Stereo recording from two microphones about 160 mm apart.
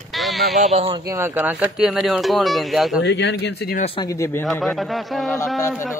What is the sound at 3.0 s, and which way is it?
Speech, 90° left.